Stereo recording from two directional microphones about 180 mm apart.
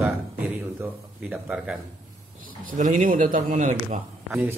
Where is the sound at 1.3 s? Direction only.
5° right (ahead or behind).